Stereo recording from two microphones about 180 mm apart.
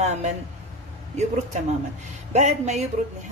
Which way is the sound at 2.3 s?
40° right (ahead or behind).